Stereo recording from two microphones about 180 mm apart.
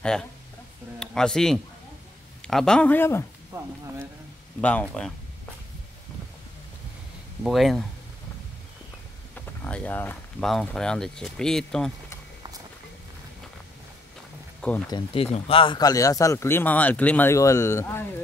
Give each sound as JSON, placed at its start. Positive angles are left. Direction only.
{"t": 0.0, "sound": "speech", "side_deg": 5}
{"t": 3.5, "sound": "speech", "side_deg": -15}
{"t": 4.6, "sound": "speech", "side_deg": 5}
{"t": 7.4, "sound": "speech", "side_deg": 0}
{"t": 9.3, "sound": "wild animals", "side_deg": 10}
{"t": 10.5, "sound": "speech", "side_deg": 5}
{"t": 14.9, "sound": "speech", "side_deg": 30}